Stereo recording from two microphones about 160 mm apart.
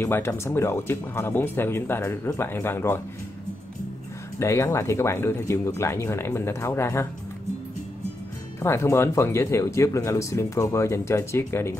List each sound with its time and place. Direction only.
0.0 s speech: 15° left (ahead or behind)
4.4 s speech: 15° left (ahead or behind)
8.5 s speech: 15° left (ahead or behind)